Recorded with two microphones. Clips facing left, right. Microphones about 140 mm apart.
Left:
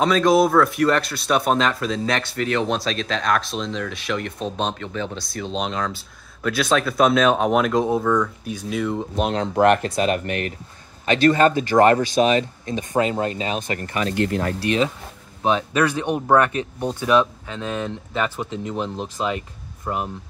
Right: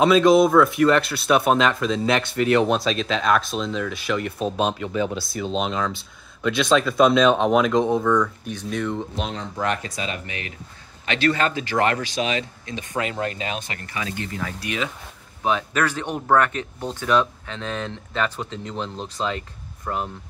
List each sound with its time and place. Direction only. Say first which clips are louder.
0.0 s speech: right 2 dB; 5° right (ahead or behind)
9.1 s speech: left 8 dB; 55° left (ahead or behind)
11.1 s speech: left 6 dB; 40° left (ahead or behind)
12.9 s speech: left 5 dB; 30° left (ahead or behind)
14.1 s speech: left 8 dB; 65° left (ahead or behind)
14.6 s speech: left 7 dB; 30° left (ahead or behind)
15.4 s speech: left 3 dB; 20° left (ahead or behind)